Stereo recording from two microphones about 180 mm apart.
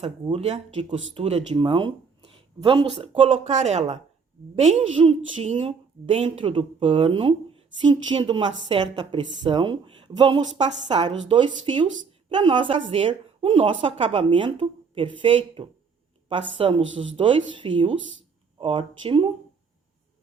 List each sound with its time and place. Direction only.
0.0 s a woman's voice: 35° right (ahead or behind)